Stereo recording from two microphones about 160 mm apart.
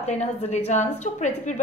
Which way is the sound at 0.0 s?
45° left (ahead or behind).